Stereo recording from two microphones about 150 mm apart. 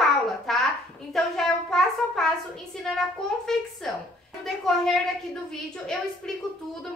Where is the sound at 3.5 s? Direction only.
5° left (ahead or behind).